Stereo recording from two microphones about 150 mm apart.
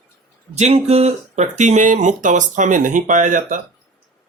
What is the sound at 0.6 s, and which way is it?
Speech, 45° right (ahead or behind).